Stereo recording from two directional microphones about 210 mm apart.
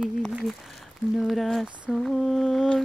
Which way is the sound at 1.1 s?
Centre (ahead or behind).